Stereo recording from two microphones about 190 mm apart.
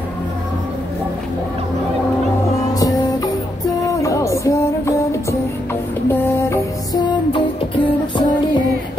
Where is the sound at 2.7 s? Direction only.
20° left (ahead or behind).